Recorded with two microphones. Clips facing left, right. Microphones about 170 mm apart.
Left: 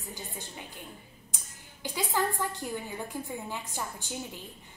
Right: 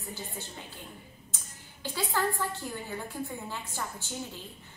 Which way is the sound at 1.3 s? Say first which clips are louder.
Even; 15° left (ahead or behind).